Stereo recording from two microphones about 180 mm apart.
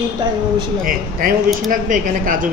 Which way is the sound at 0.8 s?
50° right (ahead or behind).